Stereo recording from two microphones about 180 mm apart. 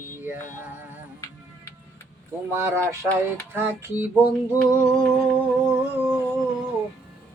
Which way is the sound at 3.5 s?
10° right (ahead or behind).